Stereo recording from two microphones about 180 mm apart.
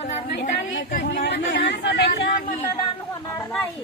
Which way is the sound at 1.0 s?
75° left (ahead or behind).